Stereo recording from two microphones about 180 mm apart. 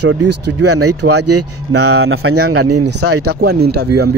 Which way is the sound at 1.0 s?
80° right.